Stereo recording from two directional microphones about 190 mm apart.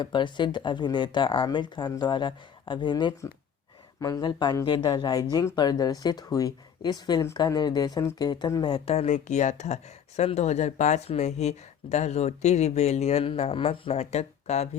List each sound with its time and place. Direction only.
0.0 s speech: 25° left (ahead or behind)